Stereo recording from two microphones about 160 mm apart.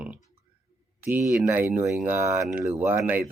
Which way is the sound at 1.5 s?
10° right (ahead or behind).